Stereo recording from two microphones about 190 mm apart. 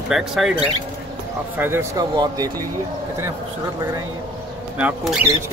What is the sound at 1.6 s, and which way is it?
Speech, 15° right (ahead or behind).